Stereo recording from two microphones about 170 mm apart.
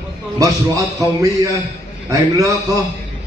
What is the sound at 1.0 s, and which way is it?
A man's voice, 20° right (ahead or behind).